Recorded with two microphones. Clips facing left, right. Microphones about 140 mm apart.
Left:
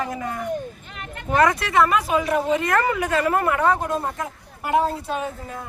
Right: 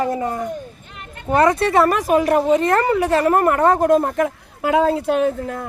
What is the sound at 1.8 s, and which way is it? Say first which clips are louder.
A woman's voice: right 1 dB; 45° right (ahead or behind).